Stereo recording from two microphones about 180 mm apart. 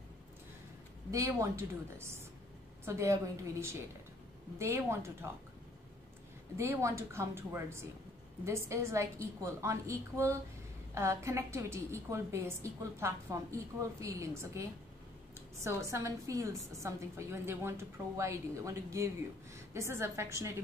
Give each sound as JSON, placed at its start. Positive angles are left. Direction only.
{"t": 1.1, "sound": "a woman's voice", "side_deg": -15}
{"t": 6.5, "sound": "a woman's voice", "side_deg": -15}
{"t": 15.6, "sound": "a woman's voice", "side_deg": -15}